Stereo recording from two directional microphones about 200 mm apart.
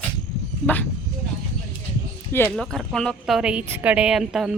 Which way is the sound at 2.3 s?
5° left (ahead or behind).